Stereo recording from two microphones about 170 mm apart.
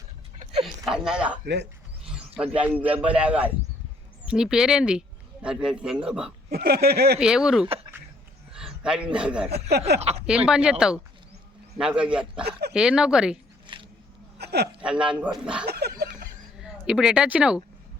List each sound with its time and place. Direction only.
0.6 s a sound: 5° right (ahead or behind)
2.0 s speech: 5° right (ahead or behind)
6.5 s speech: 65° right (ahead or behind)
7.2 s a man's voice: 5° right (ahead or behind)
9.9 s speech: 75° right (ahead or behind)
10.2 s speech: 5° right (ahead or behind)
12.5 s speech: 70° right (ahead or behind)
12.7 s speech: 5° right (ahead or behind)
14.3 s a sound: 70° right (ahead or behind)
14.8 s speech: 5° right (ahead or behind)
15.6 s speech: 70° right (ahead or behind)
16.6 s speech: 5° right (ahead or behind)